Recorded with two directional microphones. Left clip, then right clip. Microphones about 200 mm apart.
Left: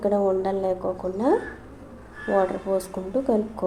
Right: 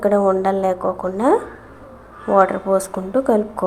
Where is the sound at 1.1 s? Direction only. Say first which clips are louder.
Right 6 dB; 10° right (ahead or behind).